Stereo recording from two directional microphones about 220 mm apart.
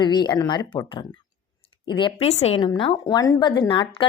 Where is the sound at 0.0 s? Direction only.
20° left (ahead or behind).